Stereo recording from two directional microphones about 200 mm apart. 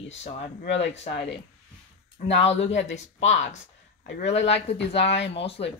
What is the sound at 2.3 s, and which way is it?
Speech, 30° left (ahead or behind).